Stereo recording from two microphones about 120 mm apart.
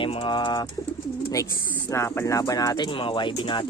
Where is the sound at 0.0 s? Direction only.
45° left (ahead or behind).